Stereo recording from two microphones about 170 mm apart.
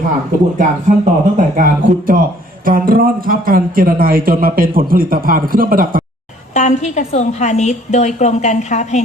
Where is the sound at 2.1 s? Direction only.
55° right (ahead or behind).